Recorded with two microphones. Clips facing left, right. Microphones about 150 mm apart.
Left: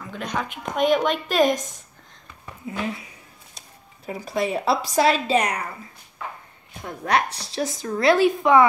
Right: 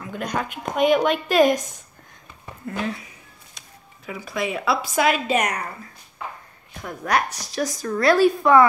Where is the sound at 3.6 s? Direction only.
35° left (ahead or behind).